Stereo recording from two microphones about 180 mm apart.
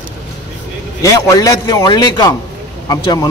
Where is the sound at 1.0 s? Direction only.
20° left (ahead or behind).